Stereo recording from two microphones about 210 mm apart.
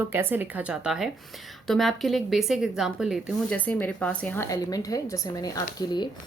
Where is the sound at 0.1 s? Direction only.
10° right (ahead or behind).